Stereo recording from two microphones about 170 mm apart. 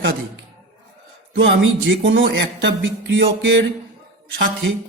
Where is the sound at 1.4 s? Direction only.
90° right.